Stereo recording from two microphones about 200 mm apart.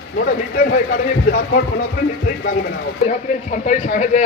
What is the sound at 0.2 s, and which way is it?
Speech, 50° left (ahead or behind).